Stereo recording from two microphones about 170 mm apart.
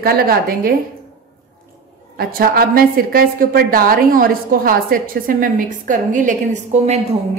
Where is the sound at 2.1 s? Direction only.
60° right (ahead or behind).